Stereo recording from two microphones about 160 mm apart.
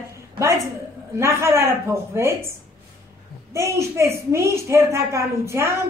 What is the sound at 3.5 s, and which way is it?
A woman's voice, 15° right (ahead or behind).